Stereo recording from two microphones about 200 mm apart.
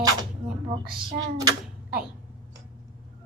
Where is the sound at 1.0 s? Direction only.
25° right (ahead or behind).